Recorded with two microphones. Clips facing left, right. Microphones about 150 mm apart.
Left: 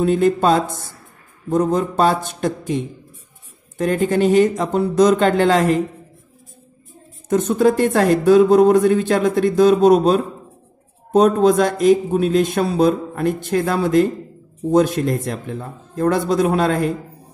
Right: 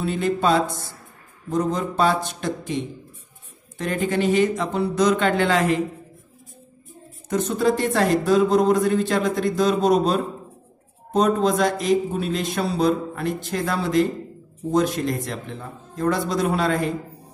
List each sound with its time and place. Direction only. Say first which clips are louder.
0.0 s speech: left 6 dB; 45° left (ahead or behind)
7.2 s speech: left 5 dB; 50° left (ahead or behind)
11.1 s speech: left 6 dB; 55° left (ahead or behind)